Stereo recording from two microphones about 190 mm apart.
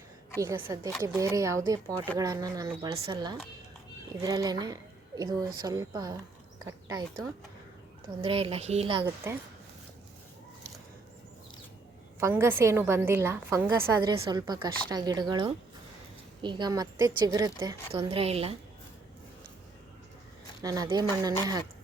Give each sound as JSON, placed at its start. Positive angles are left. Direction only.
{"t": 0.3, "sound": "a woman's voice", "side_deg": -15}
{"t": 8.2, "sound": "a woman's voice", "side_deg": -30}
{"t": 9.2, "sound": "speech", "side_deg": -15}
{"t": 12.2, "sound": "a woman's voice", "side_deg": -15}
{"t": 20.6, "sound": "a woman's voice", "side_deg": -20}